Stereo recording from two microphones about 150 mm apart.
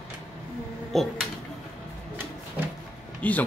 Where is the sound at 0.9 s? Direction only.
Centre (ahead or behind).